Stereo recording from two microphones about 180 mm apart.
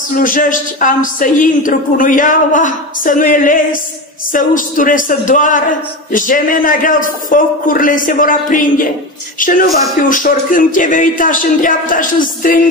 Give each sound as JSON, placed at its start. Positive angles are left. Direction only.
{"t": 0.2, "sound": "a woman's voice", "side_deg": 50}